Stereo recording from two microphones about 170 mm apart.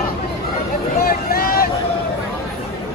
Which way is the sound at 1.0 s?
60° left (ahead or behind).